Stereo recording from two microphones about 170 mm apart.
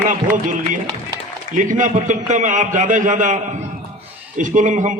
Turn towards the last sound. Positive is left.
turn(degrees=-50)  # may be behind; listen again after turning